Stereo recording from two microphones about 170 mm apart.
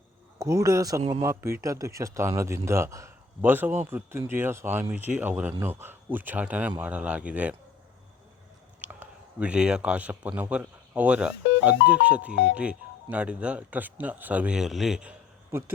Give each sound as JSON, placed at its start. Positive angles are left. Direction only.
{"t": 0.3, "sound": "a man's voice", "side_deg": -20}
{"t": 8.8, "sound": "speech", "side_deg": -10}